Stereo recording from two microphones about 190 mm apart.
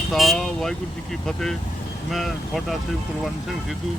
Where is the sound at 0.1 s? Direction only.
Centre (ahead or behind).